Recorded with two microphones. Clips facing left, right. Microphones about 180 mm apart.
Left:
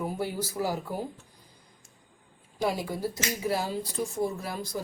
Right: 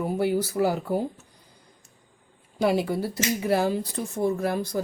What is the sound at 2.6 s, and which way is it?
Speech, 65° right (ahead or behind).